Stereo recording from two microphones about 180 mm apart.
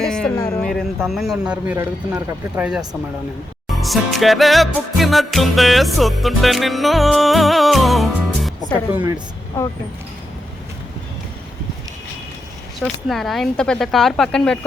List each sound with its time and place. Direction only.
0.0 s music: 5° left (ahead or behind)
0.3 s a sound: 20° left (ahead or behind)
0.6 s a sound: centre (ahead or behind)
1.0 s music: centre (ahead or behind)
8.9 s speech: 10° right (ahead or behind)
12.8 s music: centre (ahead or behind)